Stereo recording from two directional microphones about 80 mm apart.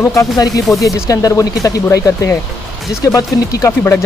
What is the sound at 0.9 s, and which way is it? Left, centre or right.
Speech, left.